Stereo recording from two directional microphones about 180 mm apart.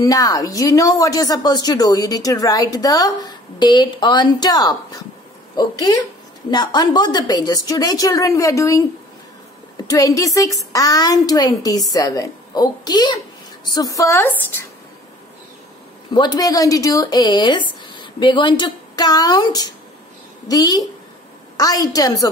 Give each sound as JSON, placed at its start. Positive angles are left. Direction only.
{"t": 0.0, "sound": "speech", "side_deg": 20}
{"t": 9.8, "sound": "a woman's voice", "side_deg": 20}
{"t": 16.1, "sound": "a woman's voice", "side_deg": 25}